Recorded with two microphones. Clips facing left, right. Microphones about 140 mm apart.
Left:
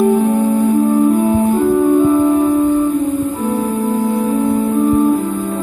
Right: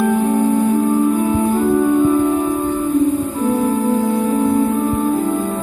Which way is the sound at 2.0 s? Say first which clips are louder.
Left 2 dB; 25° left (ahead or behind).